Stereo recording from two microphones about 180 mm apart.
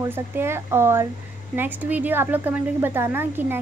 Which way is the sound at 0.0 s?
15° right (ahead or behind).